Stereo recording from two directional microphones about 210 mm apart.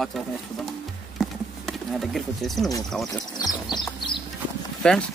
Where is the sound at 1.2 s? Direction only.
Centre (ahead or behind).